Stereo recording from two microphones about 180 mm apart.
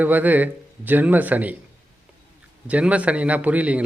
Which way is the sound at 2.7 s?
5° right (ahead or behind).